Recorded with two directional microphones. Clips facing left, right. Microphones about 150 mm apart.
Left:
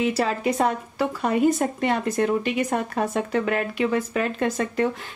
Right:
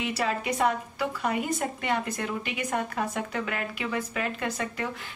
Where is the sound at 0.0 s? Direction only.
35° left (ahead or behind).